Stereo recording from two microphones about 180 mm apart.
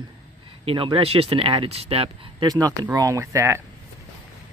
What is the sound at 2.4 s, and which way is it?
Speech, 20° right (ahead or behind).